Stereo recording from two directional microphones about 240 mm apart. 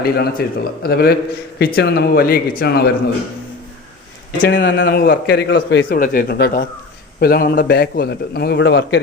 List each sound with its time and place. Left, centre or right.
0.0 s a man's voice: left
4.4 s a man's voice: left